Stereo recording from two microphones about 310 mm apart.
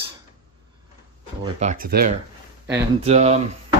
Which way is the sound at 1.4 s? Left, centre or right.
Right.